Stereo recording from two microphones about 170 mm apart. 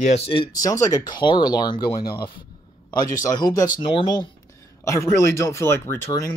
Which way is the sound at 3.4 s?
20° left (ahead or behind).